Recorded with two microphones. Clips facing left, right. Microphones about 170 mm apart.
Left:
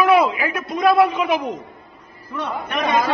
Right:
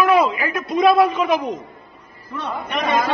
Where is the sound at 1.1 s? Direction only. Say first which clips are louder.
Right 1 dB; 10° left (ahead or behind).